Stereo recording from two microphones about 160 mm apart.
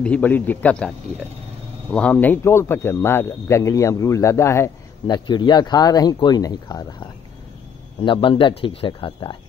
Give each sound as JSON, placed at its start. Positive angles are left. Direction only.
{"t": 0.0, "sound": "a man's voice", "side_deg": 10}